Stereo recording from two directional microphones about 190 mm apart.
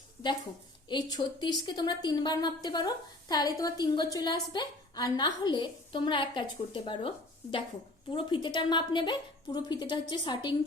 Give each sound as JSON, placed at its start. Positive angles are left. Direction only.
{"t": 0.9, "sound": "a woman's voice", "side_deg": 25}
{"t": 8.1, "sound": "a woman's voice", "side_deg": 25}